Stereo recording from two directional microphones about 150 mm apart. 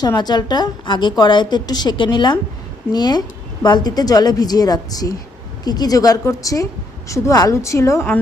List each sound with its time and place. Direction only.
0.0 s a woman's voice: 25° left (ahead or behind)